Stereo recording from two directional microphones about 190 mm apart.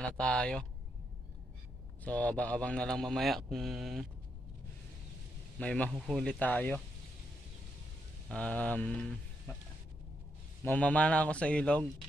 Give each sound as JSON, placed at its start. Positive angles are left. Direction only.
{"t": 0.0, "sound": "speech", "side_deg": 5}
{"t": 2.0, "sound": "speech", "side_deg": 5}
{"t": 5.6, "sound": "speech", "side_deg": 5}
{"t": 8.3, "sound": "speech", "side_deg": 5}
{"t": 9.5, "sound": "a sound", "side_deg": 15}
{"t": 10.6, "sound": "speech", "side_deg": 10}